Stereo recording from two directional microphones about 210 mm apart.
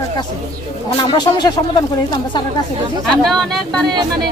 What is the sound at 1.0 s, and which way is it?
Speech, 20° left (ahead or behind).